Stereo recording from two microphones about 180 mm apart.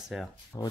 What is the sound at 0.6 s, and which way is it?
Speech, 25° left (ahead or behind).